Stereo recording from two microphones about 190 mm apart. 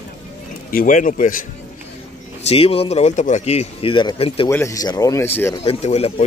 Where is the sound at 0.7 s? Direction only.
45° left (ahead or behind).